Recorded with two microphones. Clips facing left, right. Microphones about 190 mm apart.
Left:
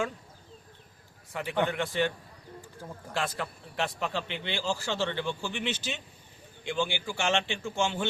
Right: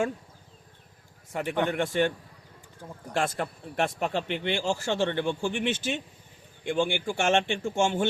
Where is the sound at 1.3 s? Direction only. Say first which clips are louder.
Right 2 dB; 45° right (ahead or behind).